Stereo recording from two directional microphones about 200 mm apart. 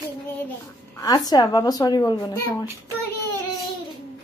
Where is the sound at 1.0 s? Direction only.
20° left (ahead or behind).